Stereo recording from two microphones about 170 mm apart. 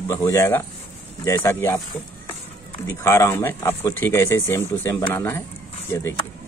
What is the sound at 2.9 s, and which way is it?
Speech, 15° left (ahead or behind).